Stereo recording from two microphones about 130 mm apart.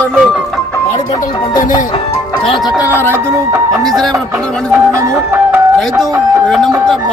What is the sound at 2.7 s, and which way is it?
Speech, 25° left (ahead or behind).